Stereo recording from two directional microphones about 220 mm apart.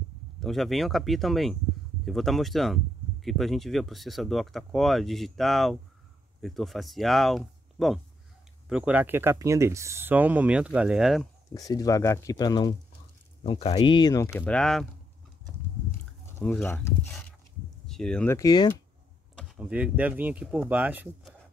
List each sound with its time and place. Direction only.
0.4 s speech: centre (ahead or behind)
11.5 s speech: 15° left (ahead or behind)
16.3 s speech: 5° left (ahead or behind)
19.3 s speech: centre (ahead or behind)